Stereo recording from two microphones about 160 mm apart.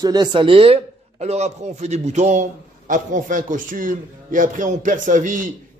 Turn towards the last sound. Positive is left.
turn(degrees=-55)  # may be behind; listen again after turning